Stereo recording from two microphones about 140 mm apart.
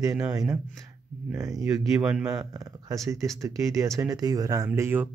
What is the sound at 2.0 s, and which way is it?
Speech, 5° right (ahead or behind).